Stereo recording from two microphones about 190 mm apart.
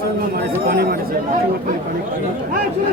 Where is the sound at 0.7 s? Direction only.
55° right (ahead or behind).